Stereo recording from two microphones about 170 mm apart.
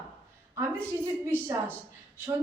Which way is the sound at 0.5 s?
15° right (ahead or behind).